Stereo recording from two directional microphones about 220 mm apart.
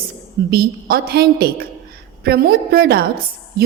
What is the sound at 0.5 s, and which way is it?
A woman's voice, 45° right (ahead or behind).